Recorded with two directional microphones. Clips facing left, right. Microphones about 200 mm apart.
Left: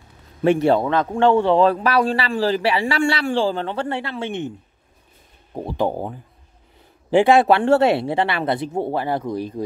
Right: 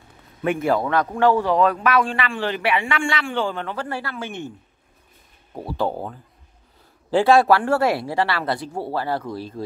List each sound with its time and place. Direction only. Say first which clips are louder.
0.4 s a man's voice: left 5 dB; 30° left (ahead or behind)
5.5 s speech: left 2 dB; 20° left (ahead or behind)